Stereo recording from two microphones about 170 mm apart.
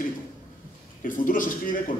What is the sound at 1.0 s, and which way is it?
Speech, 55° left (ahead or behind).